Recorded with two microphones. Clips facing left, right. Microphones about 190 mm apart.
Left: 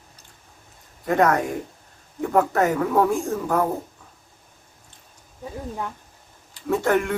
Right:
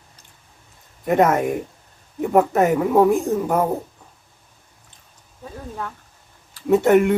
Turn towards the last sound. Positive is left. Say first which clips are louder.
# right 6 dB
turn(degrees=-20)  # may be behind; listen again after turning